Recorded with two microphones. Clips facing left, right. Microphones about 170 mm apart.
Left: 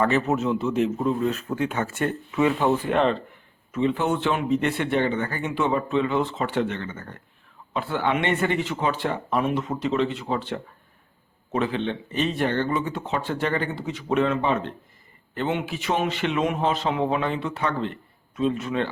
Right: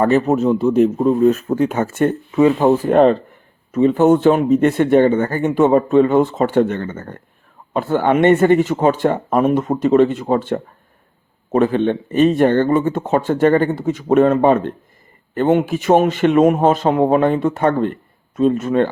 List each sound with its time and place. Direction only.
0.0 s speech: 40° right (ahead or behind)